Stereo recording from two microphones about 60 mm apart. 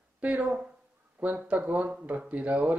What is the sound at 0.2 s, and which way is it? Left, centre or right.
Speech, right.